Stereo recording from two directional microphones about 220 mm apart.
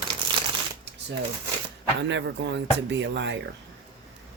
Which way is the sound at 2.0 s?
55° right (ahead or behind).